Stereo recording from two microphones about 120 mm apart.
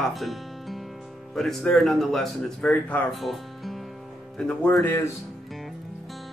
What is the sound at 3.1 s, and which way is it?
Music, centre (ahead or behind).